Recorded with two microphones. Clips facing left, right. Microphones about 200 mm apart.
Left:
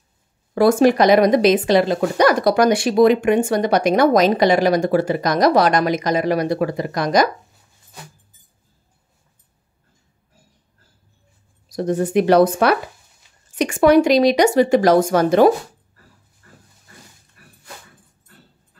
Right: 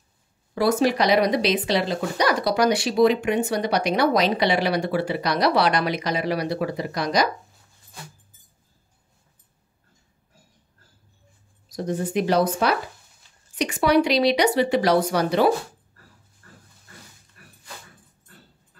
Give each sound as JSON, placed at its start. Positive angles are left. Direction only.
{"t": 0.6, "sound": "speech", "side_deg": 50}
{"t": 11.7, "sound": "speech", "side_deg": 55}